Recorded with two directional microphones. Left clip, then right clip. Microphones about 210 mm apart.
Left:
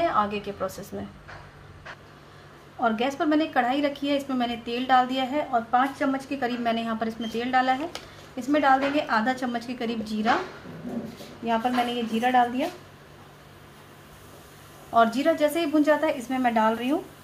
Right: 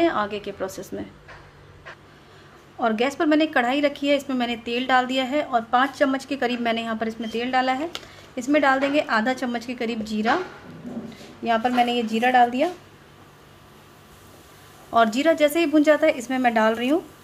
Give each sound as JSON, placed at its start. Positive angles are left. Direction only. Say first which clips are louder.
{"t": 0.0, "sound": "a woman's voice", "louder": "right 2 dB", "side_deg": -40}
{"t": 2.8, "sound": "a woman's voice", "louder": "right 3 dB", "side_deg": -40}
{"t": 11.4, "sound": "a woman's voice", "louder": "right 4 dB", "side_deg": -55}
{"t": 14.9, "sound": "a woman's voice", "louder": "right 2 dB", "side_deg": -35}